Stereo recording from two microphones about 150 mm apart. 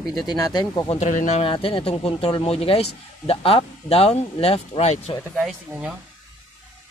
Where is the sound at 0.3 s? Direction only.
30° left (ahead or behind).